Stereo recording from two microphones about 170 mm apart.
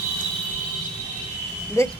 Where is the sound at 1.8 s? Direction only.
15° left (ahead or behind).